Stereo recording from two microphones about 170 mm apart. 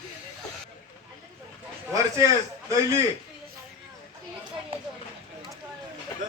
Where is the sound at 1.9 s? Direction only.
20° right (ahead or behind).